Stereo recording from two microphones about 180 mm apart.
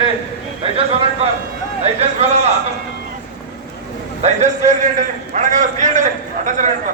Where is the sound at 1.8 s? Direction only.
35° right (ahead or behind).